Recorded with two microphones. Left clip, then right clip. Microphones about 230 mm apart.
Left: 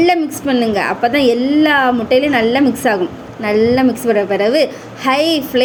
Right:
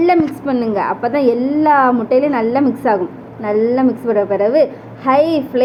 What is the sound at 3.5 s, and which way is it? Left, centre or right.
Speech, left.